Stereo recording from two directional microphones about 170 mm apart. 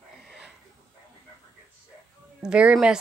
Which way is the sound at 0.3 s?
5° right (ahead or behind).